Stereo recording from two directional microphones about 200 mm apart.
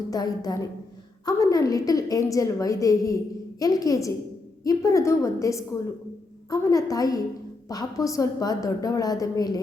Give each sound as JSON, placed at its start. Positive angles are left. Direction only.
{"t": 0.1, "sound": "a woman's voice", "side_deg": 20}